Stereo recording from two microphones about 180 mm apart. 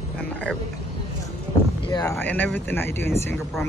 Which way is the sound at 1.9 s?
15° left (ahead or behind).